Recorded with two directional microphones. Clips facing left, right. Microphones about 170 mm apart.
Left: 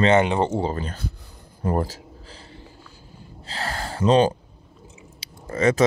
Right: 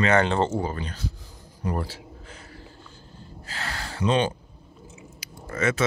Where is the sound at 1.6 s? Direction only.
45° left (ahead or behind).